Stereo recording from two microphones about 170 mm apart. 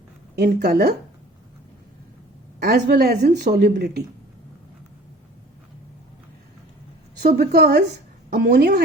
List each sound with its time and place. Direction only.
0.3 s speech: 65° right (ahead or behind)
2.6 s a woman's voice: 65° right (ahead or behind)
7.2 s a woman's voice: 70° right (ahead or behind)